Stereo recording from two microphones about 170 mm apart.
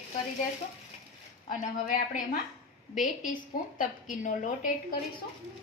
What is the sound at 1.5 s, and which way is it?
A woman's voice, 55° left (ahead or behind).